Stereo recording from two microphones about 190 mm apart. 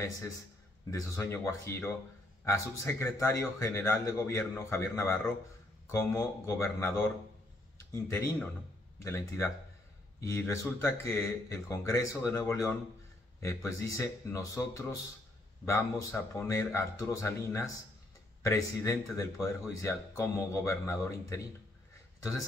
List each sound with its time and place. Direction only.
0.8 s speech: 15° left (ahead or behind)
10.2 s speech: 15° left (ahead or behind)